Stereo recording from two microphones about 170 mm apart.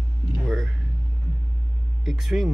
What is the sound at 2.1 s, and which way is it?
Speech, centre (ahead or behind).